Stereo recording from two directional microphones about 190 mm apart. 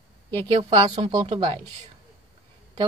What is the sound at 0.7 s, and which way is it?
Speech, 30° right (ahead or behind).